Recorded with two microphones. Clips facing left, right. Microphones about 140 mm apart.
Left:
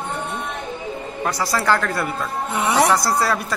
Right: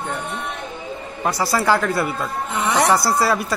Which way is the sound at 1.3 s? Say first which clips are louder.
Right 2 dB; 10° right (ahead or behind).